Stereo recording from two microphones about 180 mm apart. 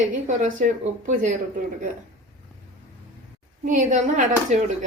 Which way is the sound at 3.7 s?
45° right (ahead or behind).